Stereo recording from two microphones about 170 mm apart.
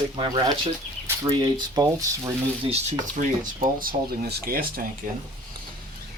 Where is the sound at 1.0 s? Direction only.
20° right (ahead or behind).